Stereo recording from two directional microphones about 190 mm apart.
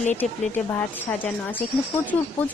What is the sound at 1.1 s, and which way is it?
Speech, 10° left (ahead or behind).